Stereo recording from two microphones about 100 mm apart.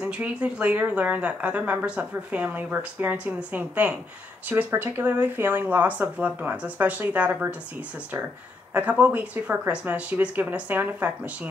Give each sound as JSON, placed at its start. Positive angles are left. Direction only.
{"t": 0.0, "sound": "speech", "side_deg": -10}
{"t": 8.7, "sound": "speech", "side_deg": -15}